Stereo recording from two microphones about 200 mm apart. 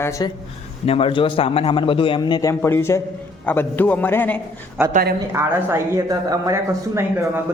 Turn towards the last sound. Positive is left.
turn(degrees=-10)  # may be behind; listen again after turning